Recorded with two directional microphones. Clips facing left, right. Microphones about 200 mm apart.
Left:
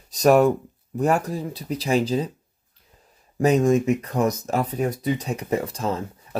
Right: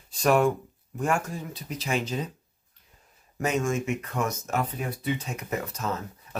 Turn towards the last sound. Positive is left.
turn(degrees=30)  # may be behind; listen again after turning